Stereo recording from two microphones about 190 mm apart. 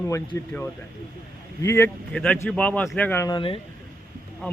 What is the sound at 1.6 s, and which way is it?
Speech, 15° left (ahead or behind).